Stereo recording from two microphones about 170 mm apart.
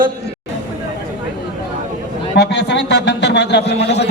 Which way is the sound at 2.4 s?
85° left.